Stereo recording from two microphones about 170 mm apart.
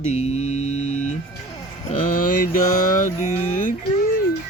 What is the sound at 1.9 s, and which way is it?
Speech, 55° left (ahead or behind).